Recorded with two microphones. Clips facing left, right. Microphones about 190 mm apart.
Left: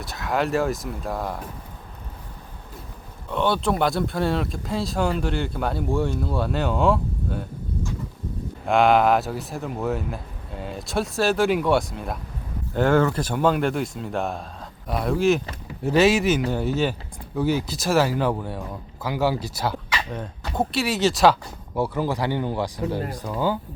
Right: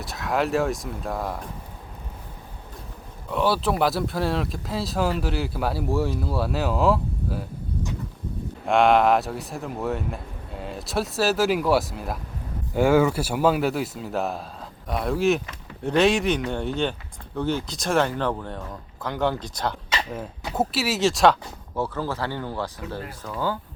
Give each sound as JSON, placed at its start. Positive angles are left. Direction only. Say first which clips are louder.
{"t": 0.0, "sound": "speech", "louder": "even", "side_deg": 0}
{"t": 3.2, "sound": "speech", "louder": "even", "side_deg": -5}
{"t": 8.6, "sound": "speech", "louder": "even", "side_deg": 0}
{"t": 20.5, "sound": "speech", "louder": "left 1 dB", "side_deg": -5}
{"t": 21.8, "sound": "speech", "louder": "left 3 dB", "side_deg": 15}